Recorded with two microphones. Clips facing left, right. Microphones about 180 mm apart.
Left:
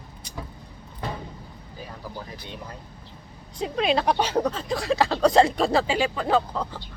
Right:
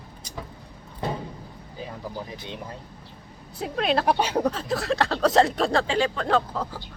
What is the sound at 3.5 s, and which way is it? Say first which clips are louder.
Speech: left 1 dB; centre (ahead or behind).